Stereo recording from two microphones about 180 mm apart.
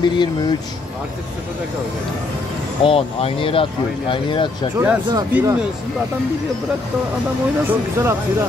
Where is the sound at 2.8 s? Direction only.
30° left (ahead or behind).